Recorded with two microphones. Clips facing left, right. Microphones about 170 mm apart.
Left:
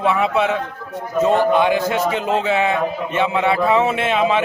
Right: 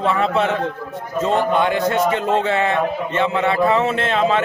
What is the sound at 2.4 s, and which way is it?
A man's voice, 10° left (ahead or behind).